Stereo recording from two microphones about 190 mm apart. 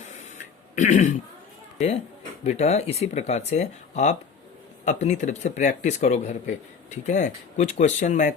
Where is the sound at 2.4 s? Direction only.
35° left (ahead or behind).